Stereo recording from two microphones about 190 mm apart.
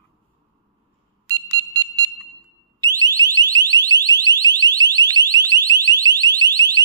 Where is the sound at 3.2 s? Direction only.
20° right (ahead or behind).